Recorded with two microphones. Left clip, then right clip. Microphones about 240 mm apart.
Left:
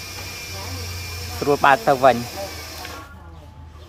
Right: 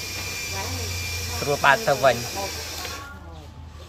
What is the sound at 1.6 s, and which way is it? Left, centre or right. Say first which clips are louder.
Speech: left 3 dB; left.